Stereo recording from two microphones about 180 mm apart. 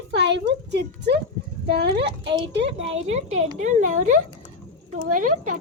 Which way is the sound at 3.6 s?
45° right (ahead or behind).